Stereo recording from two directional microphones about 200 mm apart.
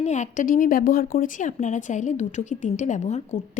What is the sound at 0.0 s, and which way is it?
Speech, 35° left (ahead or behind).